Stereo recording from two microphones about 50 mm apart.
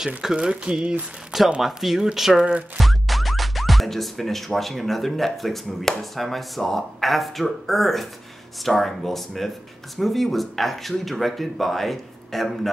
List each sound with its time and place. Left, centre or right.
0.2 s speech: centre
1.6 s speech: centre